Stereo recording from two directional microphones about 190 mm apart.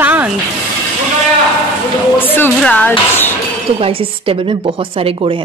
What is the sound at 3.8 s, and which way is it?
Speech, 30° right (ahead or behind).